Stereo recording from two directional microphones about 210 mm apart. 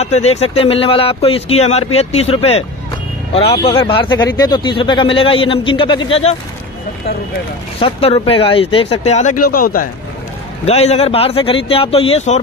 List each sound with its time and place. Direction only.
0.0 s speech: 30° left (ahead or behind)
7.8 s speech: 25° left (ahead or behind); by 9.8 s 45° left (ahead or behind)
10.6 s speech: 30° left (ahead or behind)